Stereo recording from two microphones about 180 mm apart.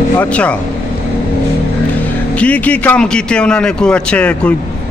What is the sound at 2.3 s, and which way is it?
Speech, 5° left (ahead or behind).